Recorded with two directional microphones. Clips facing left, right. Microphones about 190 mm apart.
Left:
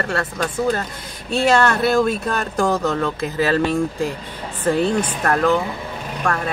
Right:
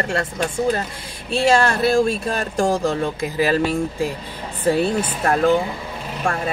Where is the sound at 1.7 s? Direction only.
30° right (ahead or behind).